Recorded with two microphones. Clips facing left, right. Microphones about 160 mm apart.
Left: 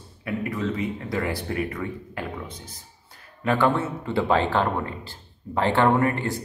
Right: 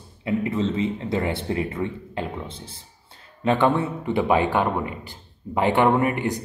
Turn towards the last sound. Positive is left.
turn(degrees=-15)  # may be behind; listen again after turning